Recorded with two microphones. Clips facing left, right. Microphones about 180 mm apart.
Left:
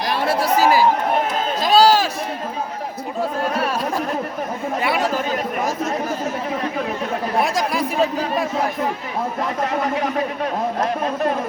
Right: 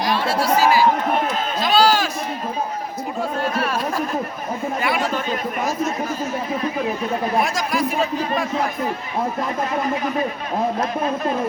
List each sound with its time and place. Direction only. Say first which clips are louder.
1.6 s run: left 3 dB; 35° left (ahead or behind)
4.8 s speech: left 2 dB; 30° left (ahead or behind)
7.4 s speech: left 1 dB; 30° left (ahead or behind)
9.8 s speech: left 1 dB; 70° left (ahead or behind)